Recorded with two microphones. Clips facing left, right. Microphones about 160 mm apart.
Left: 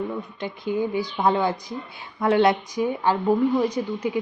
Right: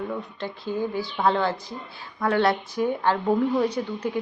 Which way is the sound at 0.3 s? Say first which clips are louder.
Left 5 dB; 15° left (ahead or behind).